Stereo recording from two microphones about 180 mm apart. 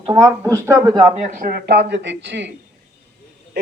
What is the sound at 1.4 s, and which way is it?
Speech, 65° right (ahead or behind).